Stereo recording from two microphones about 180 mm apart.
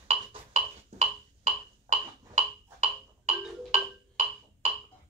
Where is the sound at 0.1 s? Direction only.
40° right (ahead or behind).